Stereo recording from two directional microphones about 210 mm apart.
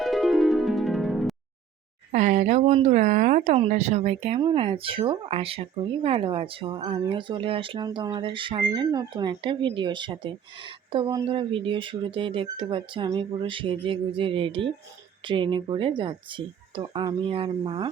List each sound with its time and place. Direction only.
0.0 s music: centre (ahead or behind)
2.1 s speech: 35° right (ahead or behind)